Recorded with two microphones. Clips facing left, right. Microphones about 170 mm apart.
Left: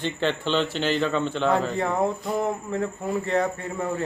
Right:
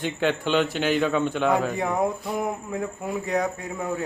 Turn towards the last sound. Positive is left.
turn(degrees=-5)  # may be behind; listen again after turning